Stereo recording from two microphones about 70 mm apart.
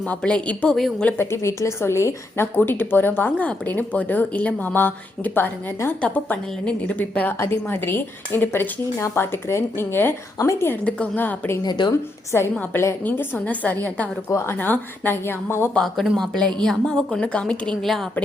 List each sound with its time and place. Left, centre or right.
0.2 s a woman's voice: centre
1.2 s speech: left
2.6 s speech: left
7.3 s speech: left
10.3 s a woman's voice: left
10.7 s speech: left
11.6 s speech: left
12.3 s speech: left
13.1 s speech: left
15.7 s a woman's voice: centre